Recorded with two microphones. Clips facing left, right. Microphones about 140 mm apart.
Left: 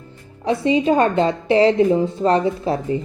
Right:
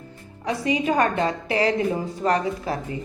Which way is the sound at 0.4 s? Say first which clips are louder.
Left 6 dB; 25° left (ahead or behind).